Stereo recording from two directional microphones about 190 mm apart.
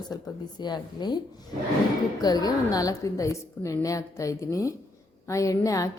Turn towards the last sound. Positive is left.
turn(degrees=15)  # may be behind; listen again after turning